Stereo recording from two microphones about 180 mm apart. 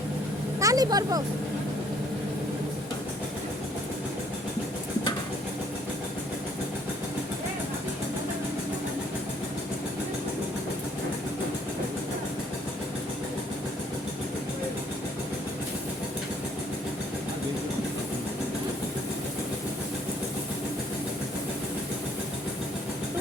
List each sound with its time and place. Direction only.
0.6 s speech: 20° right (ahead or behind)